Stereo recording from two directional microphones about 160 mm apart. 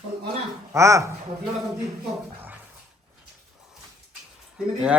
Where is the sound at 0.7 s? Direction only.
20° right (ahead or behind).